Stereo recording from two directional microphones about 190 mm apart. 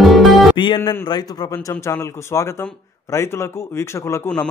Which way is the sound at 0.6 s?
25° left (ahead or behind).